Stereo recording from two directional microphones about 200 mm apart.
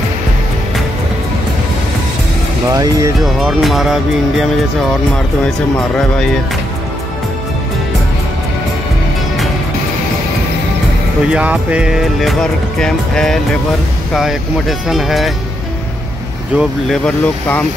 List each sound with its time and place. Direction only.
2.7 s speech: 20° right (ahead or behind)
3.2 s music: centre (ahead or behind)
5.8 s music: 5° left (ahead or behind)
11.3 s music: 5° right (ahead or behind)
16.5 s music: 5° left (ahead or behind)